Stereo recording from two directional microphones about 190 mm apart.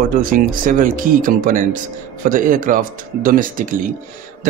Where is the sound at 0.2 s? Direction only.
45° right (ahead or behind).